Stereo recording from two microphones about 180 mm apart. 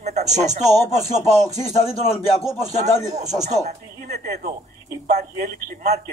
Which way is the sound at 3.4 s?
40° right (ahead or behind).